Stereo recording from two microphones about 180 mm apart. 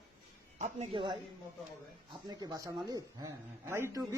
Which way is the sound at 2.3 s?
20° right (ahead or behind).